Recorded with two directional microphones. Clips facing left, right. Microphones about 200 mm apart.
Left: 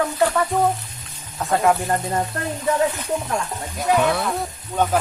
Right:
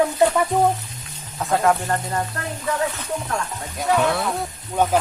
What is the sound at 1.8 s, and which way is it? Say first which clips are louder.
Music: left 2 dB; 15° left (ahead or behind).